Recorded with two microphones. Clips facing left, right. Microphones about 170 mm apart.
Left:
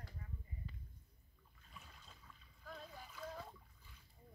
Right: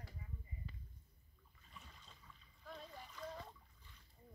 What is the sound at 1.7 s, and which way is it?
Splash, 5° left (ahead or behind).